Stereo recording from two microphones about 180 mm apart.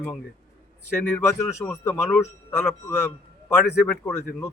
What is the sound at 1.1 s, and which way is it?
Speech, 15° left (ahead or behind).